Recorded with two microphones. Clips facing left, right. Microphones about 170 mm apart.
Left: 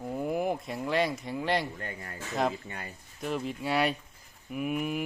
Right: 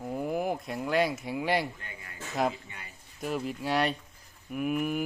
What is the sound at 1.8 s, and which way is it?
Speech, 45° left (ahead or behind).